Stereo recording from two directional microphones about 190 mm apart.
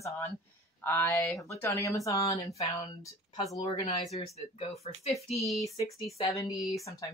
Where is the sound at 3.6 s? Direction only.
35° left (ahead or behind).